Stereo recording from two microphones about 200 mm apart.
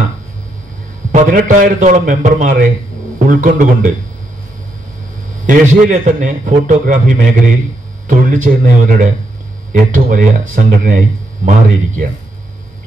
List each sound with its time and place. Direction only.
1.1 s a man's voice: 40° right (ahead or behind)
5.5 s a man's voice: 40° right (ahead or behind)